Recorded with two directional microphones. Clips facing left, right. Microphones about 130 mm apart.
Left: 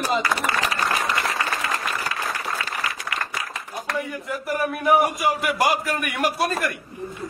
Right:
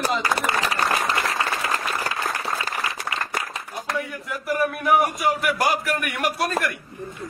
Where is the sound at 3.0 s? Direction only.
25° right (ahead or behind).